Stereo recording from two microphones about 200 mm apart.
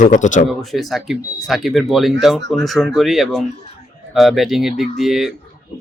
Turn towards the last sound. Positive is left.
turn(degrees=0)  # may be behind; listen again after turning